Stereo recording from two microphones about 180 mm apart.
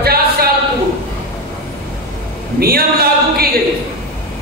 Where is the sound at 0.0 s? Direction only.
60° right (ahead or behind).